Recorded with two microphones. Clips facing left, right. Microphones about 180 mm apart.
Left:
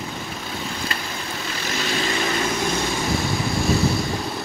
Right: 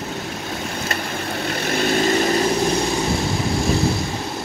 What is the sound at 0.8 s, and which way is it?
Vehicle, 50° right (ahead or behind).